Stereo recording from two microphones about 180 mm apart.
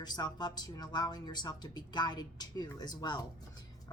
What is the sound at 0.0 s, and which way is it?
A woman's voice, 25° left (ahead or behind).